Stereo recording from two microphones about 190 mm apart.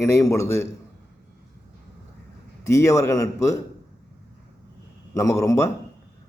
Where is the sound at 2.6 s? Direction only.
15° left (ahead or behind).